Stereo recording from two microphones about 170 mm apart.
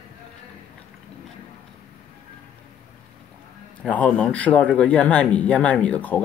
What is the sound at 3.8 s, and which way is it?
Speech, 5° left (ahead or behind).